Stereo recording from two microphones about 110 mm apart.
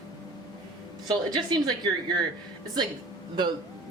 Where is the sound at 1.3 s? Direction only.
40° right (ahead or behind).